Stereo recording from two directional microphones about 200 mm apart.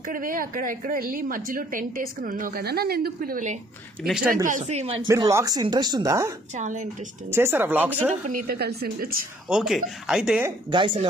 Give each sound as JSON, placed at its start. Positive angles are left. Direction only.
{"t": 0.0, "sound": "a woman's voice", "side_deg": -45}
{"t": 5.0, "sound": "speech", "side_deg": -15}
{"t": 6.5, "sound": "speech", "side_deg": -40}
{"t": 7.2, "sound": "speech", "side_deg": -10}
{"t": 8.3, "sound": "a woman's voice", "side_deg": -45}
{"t": 9.5, "sound": "speech", "side_deg": -5}
{"t": 10.7, "sound": "speech", "side_deg": -25}